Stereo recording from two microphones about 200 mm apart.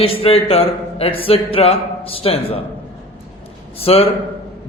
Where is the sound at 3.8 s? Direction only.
30° left (ahead or behind).